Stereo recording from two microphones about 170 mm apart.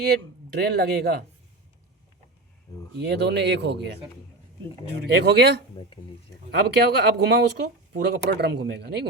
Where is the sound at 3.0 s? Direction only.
80° right.